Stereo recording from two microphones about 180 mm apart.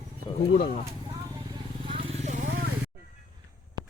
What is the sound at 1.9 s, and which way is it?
Vehicle, 40° right (ahead or behind).